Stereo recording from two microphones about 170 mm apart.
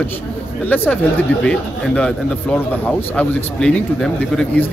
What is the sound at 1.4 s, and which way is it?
Speech, 5° left (ahead or behind).